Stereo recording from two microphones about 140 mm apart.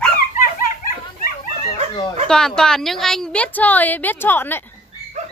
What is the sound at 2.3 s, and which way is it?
A woman's voice, 5° left (ahead or behind).